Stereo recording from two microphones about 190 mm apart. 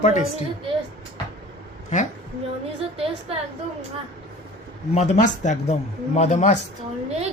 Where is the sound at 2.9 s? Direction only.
30° right (ahead or behind).